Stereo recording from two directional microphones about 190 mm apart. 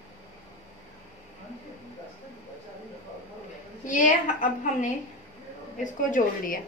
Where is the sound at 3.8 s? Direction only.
40° left (ahead or behind).